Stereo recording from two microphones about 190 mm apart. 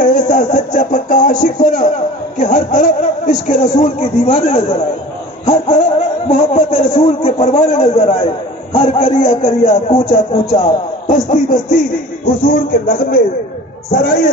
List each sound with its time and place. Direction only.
0.0 s a sound: 40° left (ahead or behind)
1.4 s speech: 40° left (ahead or behind)
6.2 s a man's voice: 30° left (ahead or behind); by 14.3 s 50° left (ahead or behind)